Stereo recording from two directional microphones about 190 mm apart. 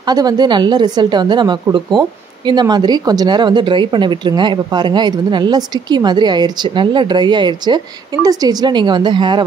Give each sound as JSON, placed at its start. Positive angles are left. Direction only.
{"t": 0.0, "sound": "speech", "side_deg": -20}